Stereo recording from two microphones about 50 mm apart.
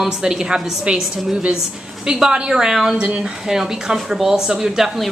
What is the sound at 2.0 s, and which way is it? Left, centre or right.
Speech, centre.